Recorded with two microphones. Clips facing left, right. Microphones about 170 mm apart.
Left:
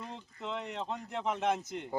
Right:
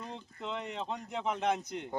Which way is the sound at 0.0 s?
Centre (ahead or behind).